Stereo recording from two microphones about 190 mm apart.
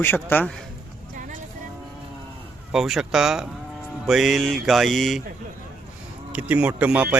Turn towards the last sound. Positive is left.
turn(degrees=-5)  # may be behind; listen again after turning